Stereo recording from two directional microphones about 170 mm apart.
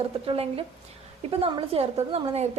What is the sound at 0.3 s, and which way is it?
A woman's voice, 35° right (ahead or behind).